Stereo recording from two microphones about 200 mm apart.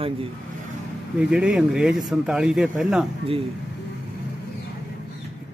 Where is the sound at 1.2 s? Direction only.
5° right (ahead or behind).